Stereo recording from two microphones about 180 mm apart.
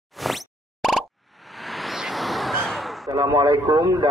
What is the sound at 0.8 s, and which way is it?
Plop, centre (ahead or behind).